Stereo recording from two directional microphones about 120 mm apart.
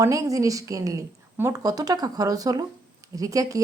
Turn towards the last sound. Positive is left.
turn(degrees=-30)  # may be behind; listen again after turning